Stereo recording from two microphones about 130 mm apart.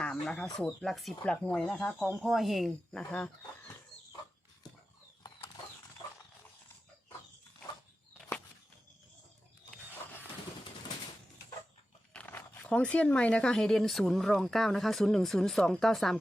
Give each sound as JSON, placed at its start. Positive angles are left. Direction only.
{"t": 0.0, "sound": "speech", "side_deg": 10}
{"t": 3.0, "sound": "speech", "side_deg": 10}
{"t": 5.2, "sound": "bird flight", "side_deg": 35}
{"t": 12.1, "sound": "speech", "side_deg": 10}